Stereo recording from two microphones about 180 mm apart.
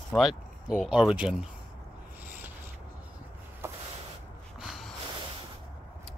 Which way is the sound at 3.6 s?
15° right (ahead or behind).